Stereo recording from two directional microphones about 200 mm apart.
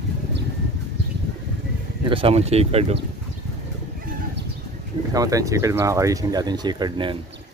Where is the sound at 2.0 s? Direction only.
25° right (ahead or behind).